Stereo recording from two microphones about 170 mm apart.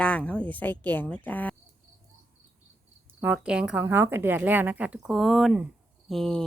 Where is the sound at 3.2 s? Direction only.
5° right (ahead or behind).